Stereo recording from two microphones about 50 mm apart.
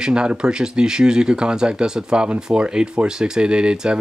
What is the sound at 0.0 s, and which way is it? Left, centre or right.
Speech, centre.